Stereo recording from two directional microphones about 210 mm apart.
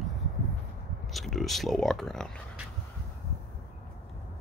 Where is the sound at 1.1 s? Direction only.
Centre (ahead or behind).